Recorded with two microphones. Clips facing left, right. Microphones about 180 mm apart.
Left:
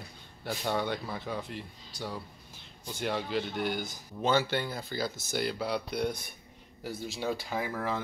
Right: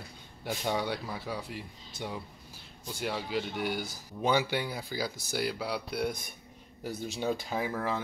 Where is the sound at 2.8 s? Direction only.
5° right (ahead or behind).